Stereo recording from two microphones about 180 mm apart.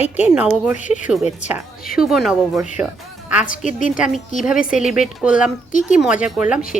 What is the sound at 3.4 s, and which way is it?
Speech, 45° left (ahead or behind).